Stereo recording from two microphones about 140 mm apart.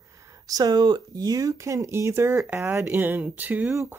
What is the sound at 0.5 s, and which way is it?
Speech, 25° right (ahead or behind).